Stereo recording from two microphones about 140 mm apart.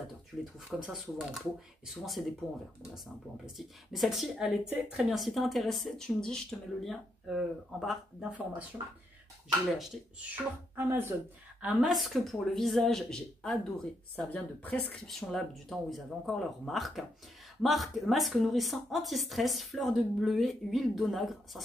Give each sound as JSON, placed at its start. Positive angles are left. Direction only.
{"t": 0.0, "sound": "speech", "side_deg": 0}
{"t": 3.5, "sound": "speech", "side_deg": 0}
{"t": 9.7, "sound": "speech", "side_deg": 0}
{"t": 10.3, "sound": "speech", "side_deg": -15}
{"t": 11.6, "sound": "speech", "side_deg": 0}